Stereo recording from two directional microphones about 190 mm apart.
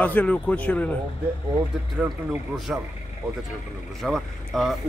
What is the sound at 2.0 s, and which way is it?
Speech, centre (ahead or behind).